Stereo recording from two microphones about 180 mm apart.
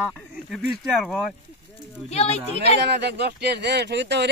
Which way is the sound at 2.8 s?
65° right (ahead or behind).